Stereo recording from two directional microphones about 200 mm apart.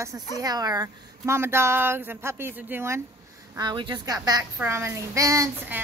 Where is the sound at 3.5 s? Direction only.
20° right (ahead or behind).